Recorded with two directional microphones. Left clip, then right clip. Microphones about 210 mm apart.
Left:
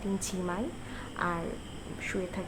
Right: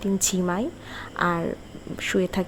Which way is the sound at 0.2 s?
35° right (ahead or behind).